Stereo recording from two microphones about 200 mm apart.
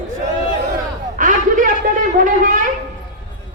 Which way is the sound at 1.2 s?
40° right (ahead or behind).